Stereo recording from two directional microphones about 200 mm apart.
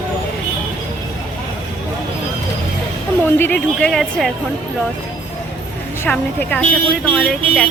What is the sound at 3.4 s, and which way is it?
Speech, 5° left (ahead or behind).